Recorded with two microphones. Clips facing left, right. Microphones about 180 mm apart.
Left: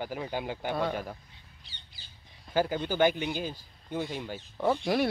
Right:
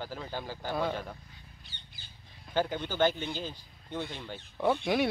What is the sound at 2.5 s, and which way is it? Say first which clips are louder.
Speech: left 3 dB; 10° left (ahead or behind).